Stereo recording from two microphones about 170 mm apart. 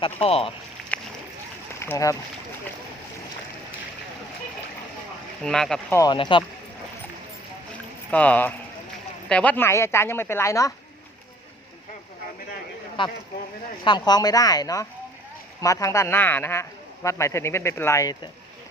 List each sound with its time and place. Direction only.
0.0 s speech: 35° left (ahead or behind)
1.8 s a man's voice: 15° left (ahead or behind)
5.4 s speech: 5° left (ahead or behind)
5.9 s speech: 20° left (ahead or behind)
8.1 s a man's voice: 10° left (ahead or behind)
13.0 s a man's voice: 30° left (ahead or behind)